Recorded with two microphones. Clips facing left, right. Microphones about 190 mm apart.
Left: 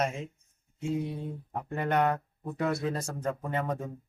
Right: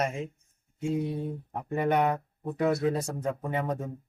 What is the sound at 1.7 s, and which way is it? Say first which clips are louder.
Speech: right 2 dB; 10° right (ahead or behind).